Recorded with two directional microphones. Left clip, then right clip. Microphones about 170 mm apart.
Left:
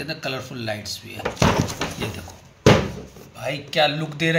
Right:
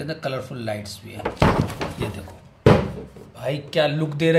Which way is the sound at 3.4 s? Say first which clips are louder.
Left 1 dB; 70° right (ahead or behind).